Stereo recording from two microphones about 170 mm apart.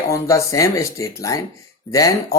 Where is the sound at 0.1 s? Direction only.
20° left (ahead or behind).